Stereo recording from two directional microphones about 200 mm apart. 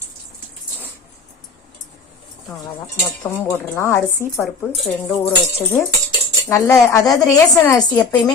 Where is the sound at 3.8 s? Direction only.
10° left (ahead or behind).